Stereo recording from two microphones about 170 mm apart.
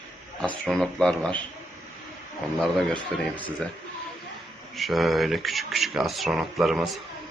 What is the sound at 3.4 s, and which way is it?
Speech, 10° left (ahead or behind).